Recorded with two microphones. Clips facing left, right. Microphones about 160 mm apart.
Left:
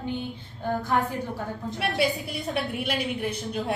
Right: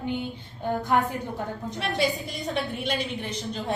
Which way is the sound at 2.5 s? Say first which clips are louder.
Even; 10° left (ahead or behind).